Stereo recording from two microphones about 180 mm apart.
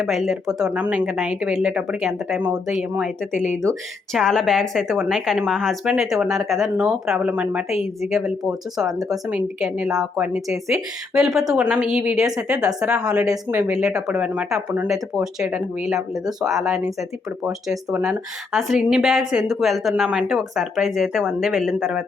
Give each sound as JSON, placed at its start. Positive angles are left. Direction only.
{"t": 0.0, "sound": "a woman's voice", "side_deg": 0}
{"t": 3.3, "sound": "speech", "side_deg": 40}
{"t": 4.1, "sound": "a woman's voice", "side_deg": 0}
{"t": 8.9, "sound": "a woman's voice", "side_deg": -20}
{"t": 9.3, "sound": "a woman's voice", "side_deg": -5}
{"t": 16.0, "sound": "speech", "side_deg": -20}
{"t": 16.6, "sound": "a woman's voice", "side_deg": -5}